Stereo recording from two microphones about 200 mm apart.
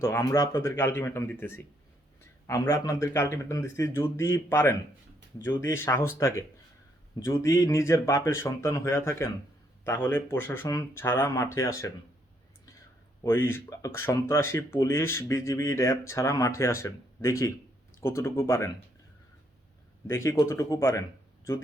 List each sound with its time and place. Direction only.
0.0 s speech: 15° left (ahead or behind)
13.2 s speech: 10° left (ahead or behind)
20.1 s speech: 15° left (ahead or behind)